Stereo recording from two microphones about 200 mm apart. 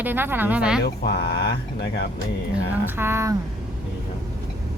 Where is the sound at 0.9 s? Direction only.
50° left (ahead or behind).